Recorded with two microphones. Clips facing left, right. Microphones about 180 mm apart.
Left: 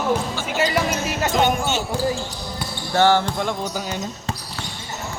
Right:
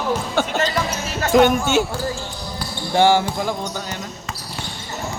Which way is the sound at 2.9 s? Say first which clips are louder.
Right 1 dB; 15° right (ahead or behind).